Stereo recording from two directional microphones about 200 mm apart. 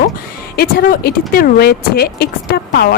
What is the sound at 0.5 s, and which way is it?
Speech, 50° left (ahead or behind).